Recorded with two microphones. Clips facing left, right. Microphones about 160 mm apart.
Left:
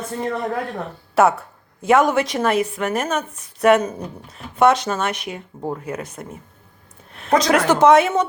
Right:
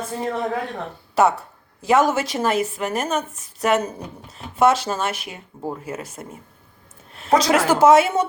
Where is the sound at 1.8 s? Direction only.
Centre (ahead or behind).